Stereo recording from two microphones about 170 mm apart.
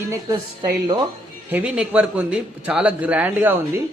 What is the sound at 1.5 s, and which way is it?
A man's voice, 5° right (ahead or behind).